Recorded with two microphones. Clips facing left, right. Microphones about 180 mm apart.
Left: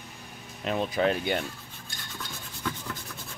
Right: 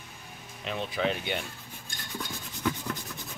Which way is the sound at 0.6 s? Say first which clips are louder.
Left 4 dB; 45° left (ahead or behind).